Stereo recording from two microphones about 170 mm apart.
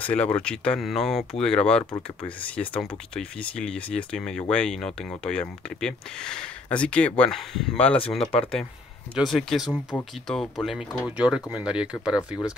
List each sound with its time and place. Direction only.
0.0 s speech: 10° left (ahead or behind)
9.7 s speech: 20° left (ahead or behind)
10.2 s speech: 5° left (ahead or behind)